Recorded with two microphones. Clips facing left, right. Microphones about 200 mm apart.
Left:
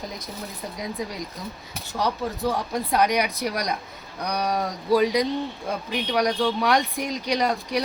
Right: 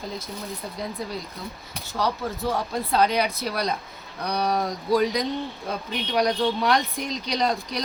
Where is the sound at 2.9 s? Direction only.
15° left (ahead or behind).